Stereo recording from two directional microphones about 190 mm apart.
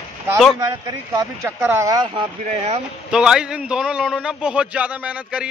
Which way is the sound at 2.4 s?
35° right (ahead or behind).